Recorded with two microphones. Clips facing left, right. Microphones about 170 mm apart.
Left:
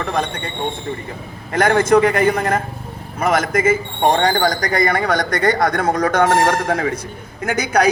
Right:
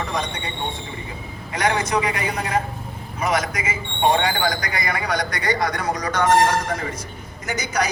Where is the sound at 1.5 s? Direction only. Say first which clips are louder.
Left 8 dB; 50° left (ahead or behind).